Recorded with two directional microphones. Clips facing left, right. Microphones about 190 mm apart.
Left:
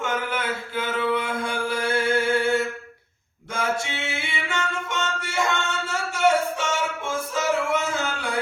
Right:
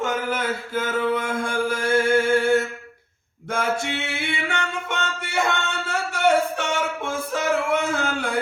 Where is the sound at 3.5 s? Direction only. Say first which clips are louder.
Right 2 dB; 55° right (ahead or behind).